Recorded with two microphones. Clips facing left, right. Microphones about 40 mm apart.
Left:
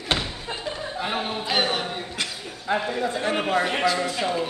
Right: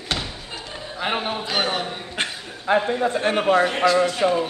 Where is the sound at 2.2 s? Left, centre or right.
Right.